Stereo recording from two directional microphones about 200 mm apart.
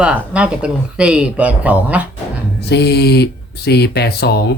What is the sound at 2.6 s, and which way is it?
Speech, 55° left (ahead or behind).